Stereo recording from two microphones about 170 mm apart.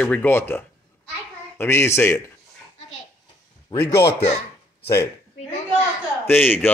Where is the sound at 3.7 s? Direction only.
15° left (ahead or behind).